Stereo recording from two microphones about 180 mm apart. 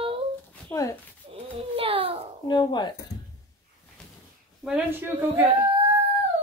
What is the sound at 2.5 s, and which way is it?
Speech, 25° left (ahead or behind).